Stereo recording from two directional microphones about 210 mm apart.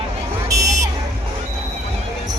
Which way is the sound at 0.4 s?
15° right (ahead or behind).